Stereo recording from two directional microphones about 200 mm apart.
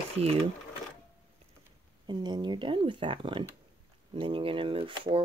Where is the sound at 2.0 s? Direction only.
20° right (ahead or behind).